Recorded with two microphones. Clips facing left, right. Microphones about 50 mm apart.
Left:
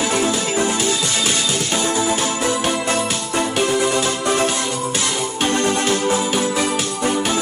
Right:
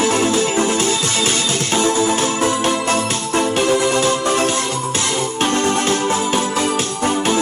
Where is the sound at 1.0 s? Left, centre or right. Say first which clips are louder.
Right 2 dB; right.